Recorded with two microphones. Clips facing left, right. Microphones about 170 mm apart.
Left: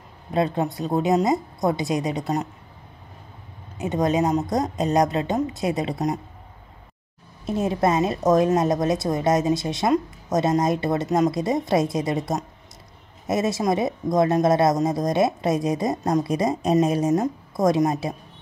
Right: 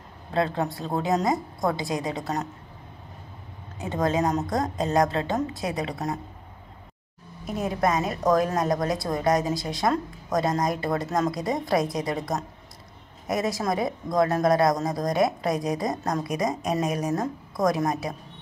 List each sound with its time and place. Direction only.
0.3 s a woman's voice: 20° left (ahead or behind)
3.8 s a woman's voice: 20° left (ahead or behind)
7.4 s a woman's voice: 25° left (ahead or behind)